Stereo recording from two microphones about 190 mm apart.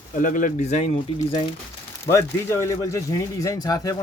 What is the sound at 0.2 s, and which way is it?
Speech, 45° left (ahead or behind).